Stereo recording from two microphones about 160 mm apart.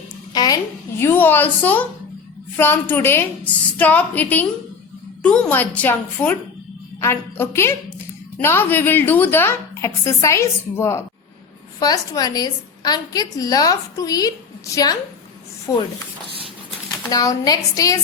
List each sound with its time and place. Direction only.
0.3 s a child's voice: 25° left (ahead or behind)
15.7 s a woman's voice: 20° left (ahead or behind)
17.1 s a woman's voice: 25° left (ahead or behind)